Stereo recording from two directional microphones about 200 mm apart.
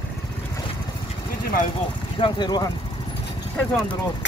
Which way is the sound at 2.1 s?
25° left (ahead or behind).